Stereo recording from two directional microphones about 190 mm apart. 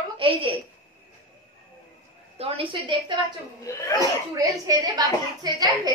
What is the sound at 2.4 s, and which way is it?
Speech, 25° right (ahead or behind).